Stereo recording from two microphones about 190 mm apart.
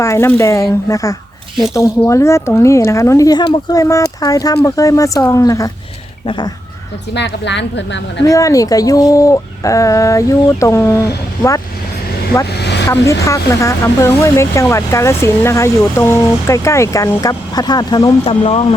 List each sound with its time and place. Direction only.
0.0 s speech: 15° left (ahead or behind)
6.2 s crow: 25° left (ahead or behind)
7.1 s a woman's voice: 65° left (ahead or behind)
8.3 s speech: 15° left (ahead or behind)
12.5 s vehicle: 60° left (ahead or behind)
12.9 s speech: 15° left (ahead or behind)